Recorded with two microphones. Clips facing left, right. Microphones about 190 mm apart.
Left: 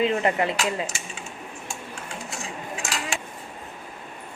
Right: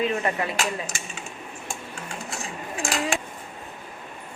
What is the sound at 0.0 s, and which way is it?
Speech, 25° left (ahead or behind).